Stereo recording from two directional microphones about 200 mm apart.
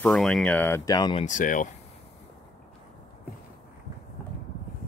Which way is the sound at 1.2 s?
40° left (ahead or behind).